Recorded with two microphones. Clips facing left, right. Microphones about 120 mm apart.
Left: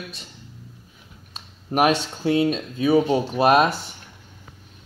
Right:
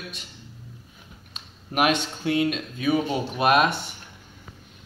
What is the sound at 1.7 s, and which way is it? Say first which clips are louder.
Speech: left 3 dB; 35° left (ahead or behind).